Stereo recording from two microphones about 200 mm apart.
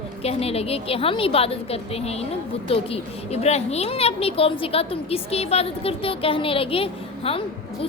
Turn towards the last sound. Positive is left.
turn(degrees=25)  # may be behind; listen again after turning